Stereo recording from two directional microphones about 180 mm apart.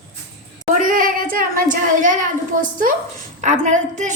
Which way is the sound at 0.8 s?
50° right (ahead or behind).